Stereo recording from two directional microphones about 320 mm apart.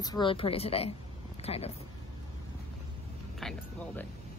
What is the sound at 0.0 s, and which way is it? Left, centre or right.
A woman's voice, centre.